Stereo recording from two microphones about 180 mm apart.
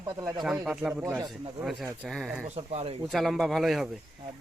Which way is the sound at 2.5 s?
35° right (ahead or behind).